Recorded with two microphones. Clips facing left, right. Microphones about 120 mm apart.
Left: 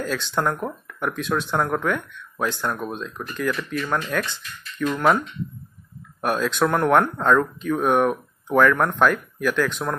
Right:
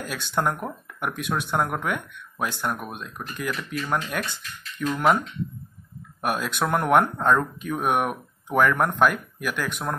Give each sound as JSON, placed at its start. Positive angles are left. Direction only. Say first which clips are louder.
{"t": 0.0, "sound": "speech", "louder": "left 2 dB", "side_deg": -10}
{"t": 6.2, "sound": "speech", "louder": "left 4 dB", "side_deg": -15}